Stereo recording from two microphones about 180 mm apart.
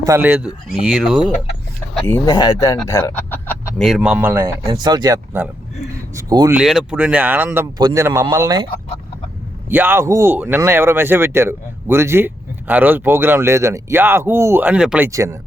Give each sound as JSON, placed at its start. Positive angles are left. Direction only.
{"t": 0.0, "sound": "speech", "side_deg": -15}
{"t": 2.0, "sound": "speech", "side_deg": 15}
{"t": 4.7, "sound": "speech", "side_deg": -25}
{"t": 6.5, "sound": "speech", "side_deg": -5}
{"t": 9.6, "sound": "speech", "side_deg": -10}